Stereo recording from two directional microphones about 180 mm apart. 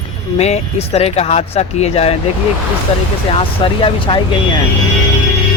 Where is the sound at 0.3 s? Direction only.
35° left (ahead or behind).